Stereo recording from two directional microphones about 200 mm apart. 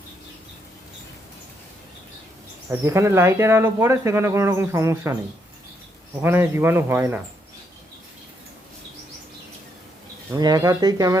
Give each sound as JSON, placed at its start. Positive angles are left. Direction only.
{"t": 2.6, "sound": "speech", "side_deg": -15}
{"t": 6.2, "sound": "speech", "side_deg": -10}
{"t": 10.3, "sound": "speech", "side_deg": -20}